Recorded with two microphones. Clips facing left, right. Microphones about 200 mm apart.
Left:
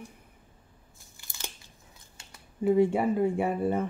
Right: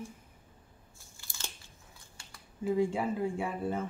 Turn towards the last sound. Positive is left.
turn(degrees=65)  # may be behind; listen again after turning